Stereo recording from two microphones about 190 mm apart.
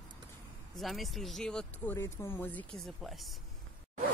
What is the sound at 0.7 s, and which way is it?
Speech, centre (ahead or behind).